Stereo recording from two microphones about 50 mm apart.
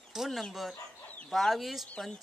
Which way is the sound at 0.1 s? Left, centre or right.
Centre.